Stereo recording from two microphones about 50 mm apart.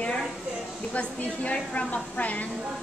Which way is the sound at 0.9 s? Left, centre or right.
Left.